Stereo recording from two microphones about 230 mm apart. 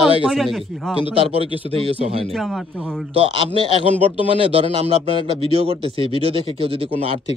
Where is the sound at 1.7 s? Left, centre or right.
Right.